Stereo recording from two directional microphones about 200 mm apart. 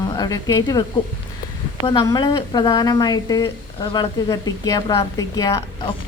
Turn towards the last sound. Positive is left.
turn(degrees=20)  # may be behind; listen again after turning